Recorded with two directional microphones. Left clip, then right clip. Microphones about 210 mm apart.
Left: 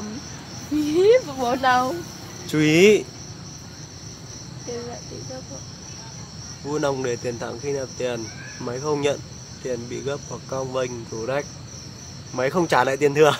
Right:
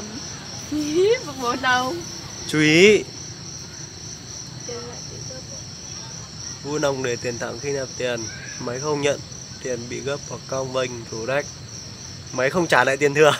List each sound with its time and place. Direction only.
1.0 s speech: 55° left (ahead or behind)
2.4 s speech: centre (ahead or behind)
6.7 s speech: centre (ahead or behind)